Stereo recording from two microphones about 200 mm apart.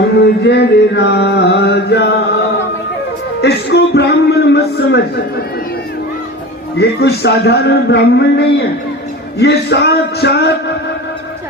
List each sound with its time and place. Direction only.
0.2 s chant: 55° left (ahead or behind)
3.4 s a sound: 55° left (ahead or behind)
6.7 s a man's voice: 55° left (ahead or behind)